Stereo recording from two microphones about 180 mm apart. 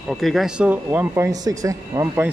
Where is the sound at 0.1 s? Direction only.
Centre (ahead or behind).